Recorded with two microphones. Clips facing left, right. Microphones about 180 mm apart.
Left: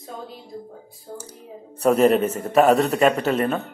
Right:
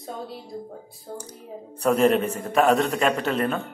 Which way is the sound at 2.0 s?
5° left (ahead or behind).